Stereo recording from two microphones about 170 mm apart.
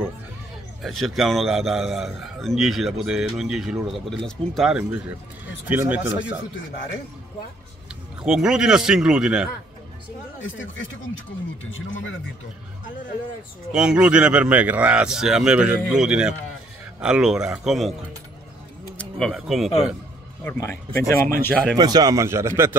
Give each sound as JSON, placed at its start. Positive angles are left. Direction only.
{"t": 0.8, "sound": "a man's voice", "side_deg": 0}
{"t": 8.2, "sound": "a man's voice", "side_deg": -5}
{"t": 13.7, "sound": "a man's voice", "side_deg": -5}
{"t": 18.9, "sound": "speech", "side_deg": 5}
{"t": 20.4, "sound": "speech", "side_deg": 15}
{"t": 21.7, "sound": "speech", "side_deg": -25}